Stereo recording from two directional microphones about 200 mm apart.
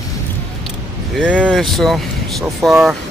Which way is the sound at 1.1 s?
5° right (ahead or behind).